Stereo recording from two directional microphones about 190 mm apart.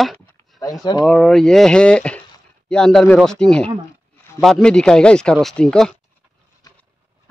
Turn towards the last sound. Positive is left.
turn(degrees=5)  # may be behind; listen again after turning